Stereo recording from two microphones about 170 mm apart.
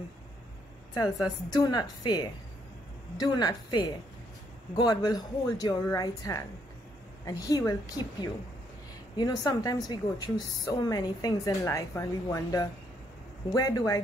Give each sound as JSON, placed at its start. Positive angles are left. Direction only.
{"t": 1.5, "sound": "a woman's voice", "side_deg": 25}